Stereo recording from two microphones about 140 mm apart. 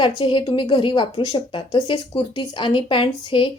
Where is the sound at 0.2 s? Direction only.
35° left (ahead or behind).